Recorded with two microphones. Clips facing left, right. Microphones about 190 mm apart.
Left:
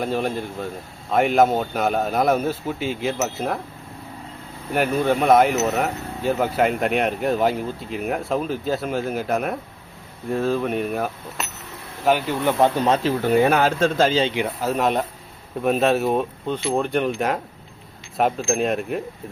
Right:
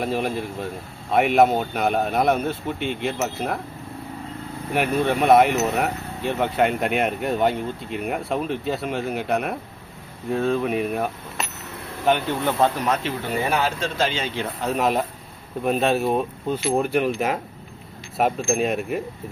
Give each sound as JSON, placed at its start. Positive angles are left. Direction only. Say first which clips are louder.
{"t": 0.0, "sound": "speech", "louder": "left 1 dB", "side_deg": 0}
{"t": 4.7, "sound": "speech", "louder": "left 1 dB", "side_deg": 0}
{"t": 12.7, "sound": "speech", "louder": "left 5 dB", "side_deg": 30}
{"t": 13.5, "sound": "speech", "louder": "left 5 dB", "side_deg": 55}
{"t": 14.6, "sound": "speech", "louder": "right 1 dB", "side_deg": 0}